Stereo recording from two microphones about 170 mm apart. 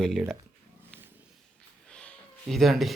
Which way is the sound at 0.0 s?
Centre (ahead or behind).